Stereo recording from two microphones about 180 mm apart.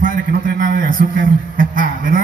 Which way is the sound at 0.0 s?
50° right (ahead or behind).